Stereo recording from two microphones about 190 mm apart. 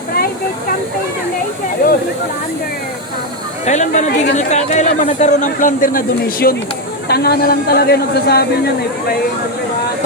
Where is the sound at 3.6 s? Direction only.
40° left (ahead or behind); by 8.4 s 55° left (ahead or behind).